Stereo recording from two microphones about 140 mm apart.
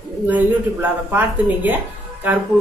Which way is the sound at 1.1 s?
15° right (ahead or behind).